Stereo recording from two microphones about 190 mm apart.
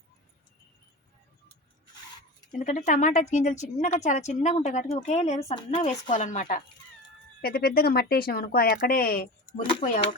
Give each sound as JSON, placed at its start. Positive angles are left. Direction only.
{"t": 2.5, "sound": "a woman's voice", "side_deg": 40}
{"t": 7.4, "sound": "speech", "side_deg": 55}